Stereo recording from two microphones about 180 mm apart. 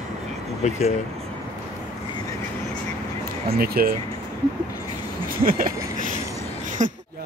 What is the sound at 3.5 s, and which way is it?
Speech, 55° right (ahead or behind).